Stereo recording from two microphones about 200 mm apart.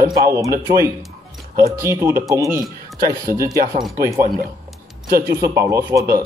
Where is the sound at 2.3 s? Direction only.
15° right (ahead or behind).